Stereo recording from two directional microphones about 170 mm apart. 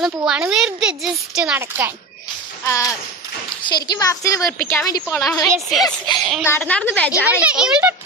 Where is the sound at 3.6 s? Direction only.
25° left (ahead or behind).